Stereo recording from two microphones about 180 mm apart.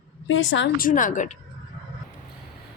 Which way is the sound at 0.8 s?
50° left (ahead or behind).